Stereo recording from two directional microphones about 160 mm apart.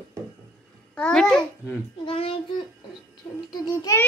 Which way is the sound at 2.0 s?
35° left (ahead or behind).